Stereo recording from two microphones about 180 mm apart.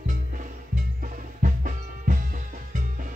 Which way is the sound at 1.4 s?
45° right (ahead or behind).